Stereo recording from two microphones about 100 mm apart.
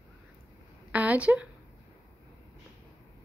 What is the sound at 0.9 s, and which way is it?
Speech, 15° right (ahead or behind).